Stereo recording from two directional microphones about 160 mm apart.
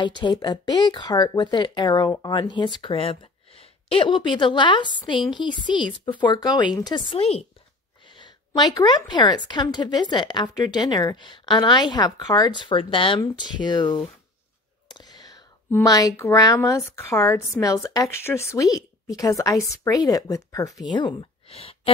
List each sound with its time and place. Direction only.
0.0 s a woman's voice: 30° left (ahead or behind)
8.0 s a sound: 30° left (ahead or behind)
9.5 s a woman's voice: 30° left (ahead or behind)